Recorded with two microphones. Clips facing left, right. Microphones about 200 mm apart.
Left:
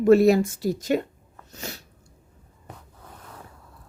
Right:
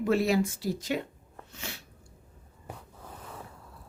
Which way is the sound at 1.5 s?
40° left (ahead or behind).